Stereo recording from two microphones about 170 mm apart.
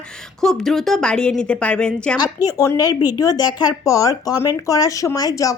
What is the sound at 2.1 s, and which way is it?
A woman's voice, 20° left (ahead or behind).